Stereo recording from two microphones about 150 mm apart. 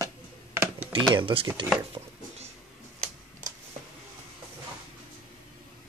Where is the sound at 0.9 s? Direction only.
35° right (ahead or behind).